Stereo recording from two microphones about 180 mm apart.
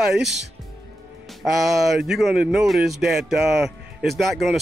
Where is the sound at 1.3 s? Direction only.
Centre (ahead or behind).